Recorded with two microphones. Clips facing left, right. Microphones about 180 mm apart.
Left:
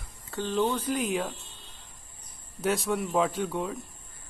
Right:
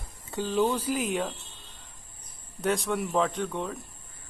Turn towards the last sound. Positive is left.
turn(degrees=5)  # may be behind; listen again after turning